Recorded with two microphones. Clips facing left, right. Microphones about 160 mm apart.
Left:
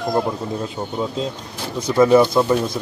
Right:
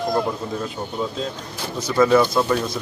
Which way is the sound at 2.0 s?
15° left (ahead or behind).